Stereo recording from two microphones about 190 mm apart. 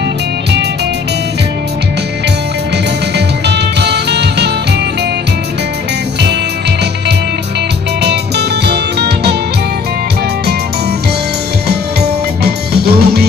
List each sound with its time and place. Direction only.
3.4 s music: 60° right (ahead or behind)
8.0 s music: 60° right (ahead or behind)
11.6 s music: 60° right (ahead or behind)